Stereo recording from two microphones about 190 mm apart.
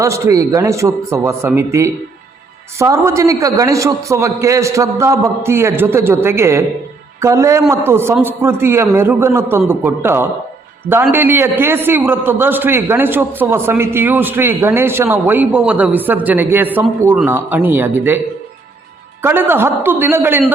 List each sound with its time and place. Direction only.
0.0 s a man's voice: 15° right (ahead or behind)
19.2 s a man's voice: 10° right (ahead or behind)